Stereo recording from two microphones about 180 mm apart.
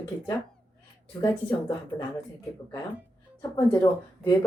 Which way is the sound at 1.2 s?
25° left (ahead or behind).